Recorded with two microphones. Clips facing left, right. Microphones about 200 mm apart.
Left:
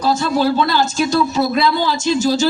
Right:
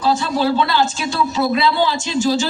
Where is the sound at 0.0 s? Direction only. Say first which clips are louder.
Left 1 dB; 40° left (ahead or behind).